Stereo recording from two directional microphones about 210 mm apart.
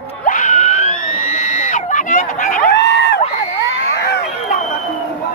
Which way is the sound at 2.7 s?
55° left (ahead or behind).